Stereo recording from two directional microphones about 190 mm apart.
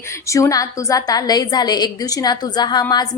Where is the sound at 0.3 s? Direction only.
15° left (ahead or behind).